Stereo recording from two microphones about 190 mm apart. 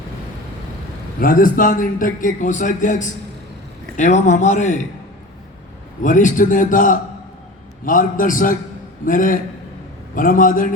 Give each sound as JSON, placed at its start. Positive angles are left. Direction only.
{"t": 1.2, "sound": "a man's voice", "side_deg": 45}
{"t": 6.0, "sound": "a man's voice", "side_deg": 40}